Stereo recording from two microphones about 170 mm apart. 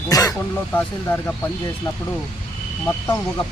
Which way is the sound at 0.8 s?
10° left (ahead or behind).